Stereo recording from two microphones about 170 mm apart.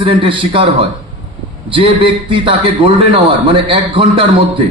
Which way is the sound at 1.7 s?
30° right (ahead or behind).